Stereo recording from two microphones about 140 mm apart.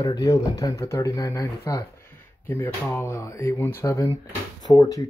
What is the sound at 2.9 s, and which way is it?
Speech, 20° left (ahead or behind).